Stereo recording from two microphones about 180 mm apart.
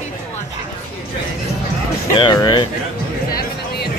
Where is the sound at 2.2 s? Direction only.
25° left (ahead or behind).